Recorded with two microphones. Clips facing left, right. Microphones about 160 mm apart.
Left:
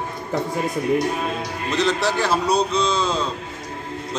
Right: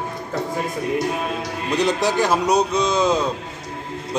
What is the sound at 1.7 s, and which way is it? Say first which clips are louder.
Speech: right 2 dB; 15° right (ahead or behind).